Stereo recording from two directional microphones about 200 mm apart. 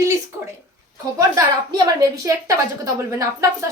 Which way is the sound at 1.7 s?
20° right (ahead or behind).